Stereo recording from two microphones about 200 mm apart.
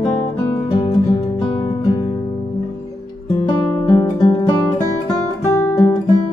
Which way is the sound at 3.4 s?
20° left (ahead or behind).